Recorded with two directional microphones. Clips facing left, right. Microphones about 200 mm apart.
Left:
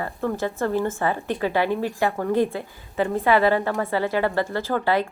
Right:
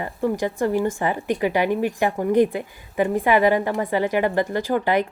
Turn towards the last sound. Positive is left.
turn(degrees=-15)  # may be behind; listen again after turning